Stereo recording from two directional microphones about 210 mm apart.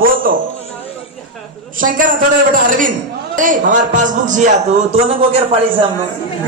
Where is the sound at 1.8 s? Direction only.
40° right (ahead or behind).